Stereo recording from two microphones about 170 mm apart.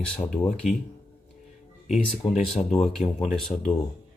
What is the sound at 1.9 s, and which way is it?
Speech, 40° left (ahead or behind).